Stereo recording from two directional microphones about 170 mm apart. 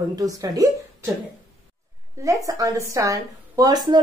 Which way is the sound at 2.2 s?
20° right (ahead or behind).